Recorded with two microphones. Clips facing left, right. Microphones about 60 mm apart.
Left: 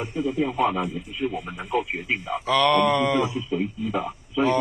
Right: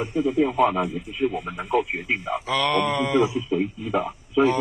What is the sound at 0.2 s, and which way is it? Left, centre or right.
Speech, right.